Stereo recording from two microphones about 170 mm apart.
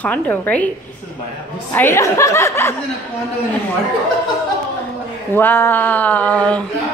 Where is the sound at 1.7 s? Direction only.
15° left (ahead or behind).